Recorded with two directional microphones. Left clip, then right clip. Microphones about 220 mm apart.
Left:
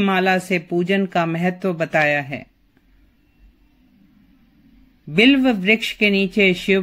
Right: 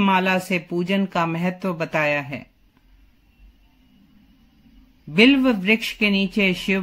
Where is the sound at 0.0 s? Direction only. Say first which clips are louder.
Left 1 dB; 5° right (ahead or behind).